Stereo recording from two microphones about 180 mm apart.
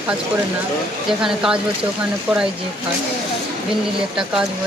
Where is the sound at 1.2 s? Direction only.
5° right (ahead or behind).